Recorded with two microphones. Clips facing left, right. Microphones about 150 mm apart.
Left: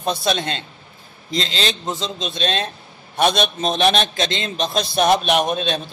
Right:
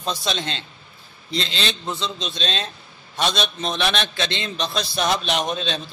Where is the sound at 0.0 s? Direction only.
55° left (ahead or behind).